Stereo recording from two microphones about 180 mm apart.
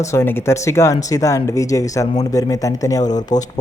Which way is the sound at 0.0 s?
15° left (ahead or behind).